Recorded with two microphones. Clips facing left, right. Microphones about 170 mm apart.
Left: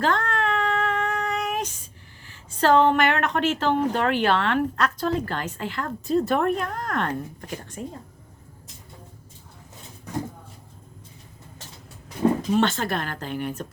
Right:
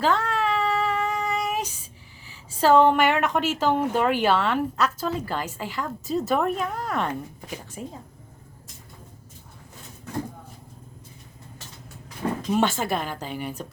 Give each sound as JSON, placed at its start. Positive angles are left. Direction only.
{"t": 0.0, "sound": "female singing", "side_deg": -5}
{"t": 2.2, "sound": "a woman's voice", "side_deg": -5}
{"t": 12.2, "sound": "a sound", "side_deg": 25}
{"t": 12.5, "sound": "speech", "side_deg": -10}